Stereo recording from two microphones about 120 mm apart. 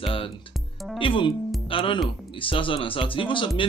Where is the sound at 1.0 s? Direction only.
45° left (ahead or behind).